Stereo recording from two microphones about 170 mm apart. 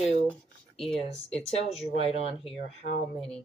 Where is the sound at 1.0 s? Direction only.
35° left (ahead or behind).